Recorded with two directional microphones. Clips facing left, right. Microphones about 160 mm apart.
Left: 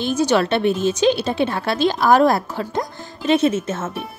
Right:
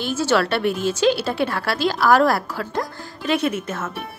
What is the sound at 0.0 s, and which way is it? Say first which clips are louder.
Speech: left 2 dB; 15° left (ahead or behind).